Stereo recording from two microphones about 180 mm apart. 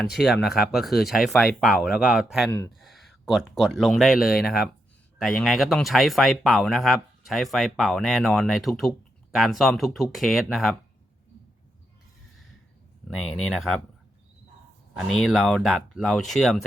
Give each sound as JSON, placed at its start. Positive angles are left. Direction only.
{"t": 0.0, "sound": "speech", "side_deg": 0}
{"t": 4.3, "sound": "speech", "side_deg": 60}
{"t": 5.2, "sound": "speech", "side_deg": 0}
{"t": 13.1, "sound": "speech", "side_deg": 5}
{"t": 14.9, "sound": "speech", "side_deg": 0}